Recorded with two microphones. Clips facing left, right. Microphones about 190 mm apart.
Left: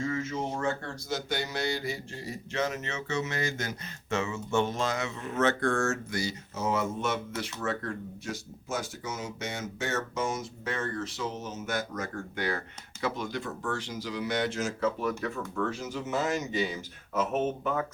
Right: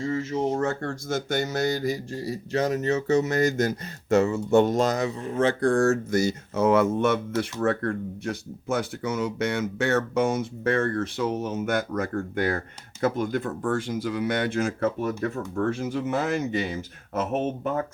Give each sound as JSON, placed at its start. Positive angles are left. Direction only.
{"t": 0.0, "sound": "speech", "side_deg": -35}
{"t": 15.2, "sound": "speech", "side_deg": -50}